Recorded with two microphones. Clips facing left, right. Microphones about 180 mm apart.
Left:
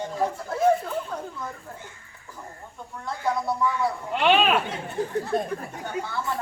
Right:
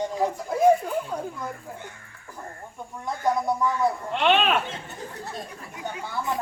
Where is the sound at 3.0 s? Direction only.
15° right (ahead or behind).